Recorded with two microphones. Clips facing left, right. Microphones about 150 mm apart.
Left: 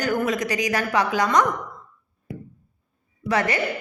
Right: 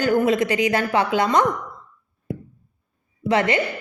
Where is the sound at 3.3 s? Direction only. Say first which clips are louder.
Right 3 dB; 25° right (ahead or behind).